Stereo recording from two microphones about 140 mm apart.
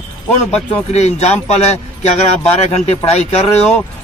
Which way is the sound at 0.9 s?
50° left (ahead or behind).